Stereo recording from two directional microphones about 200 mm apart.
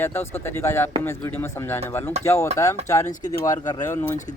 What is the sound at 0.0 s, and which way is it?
Speech, 10° left (ahead or behind).